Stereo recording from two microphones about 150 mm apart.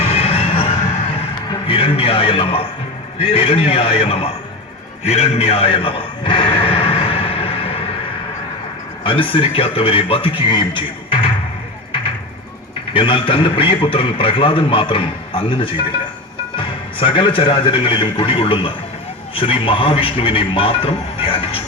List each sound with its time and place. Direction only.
0.0 s a sound: 40° left (ahead or behind)
1.2 s music: 40° left (ahead or behind)
3.2 s a man's voice: 40° left (ahead or behind)
5.0 s music: 45° left (ahead or behind)
9.0 s a man's voice: 35° left (ahead or behind)
12.9 s a man's voice: 35° left (ahead or behind)